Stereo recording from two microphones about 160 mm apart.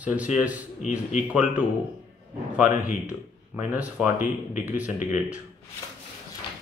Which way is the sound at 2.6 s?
50° left (ahead or behind).